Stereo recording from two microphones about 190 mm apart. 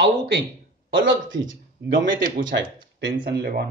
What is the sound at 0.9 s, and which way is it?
Speech, 80° right.